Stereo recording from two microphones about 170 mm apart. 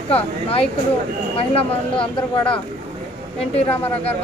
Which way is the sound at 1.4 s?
30° left (ahead or behind).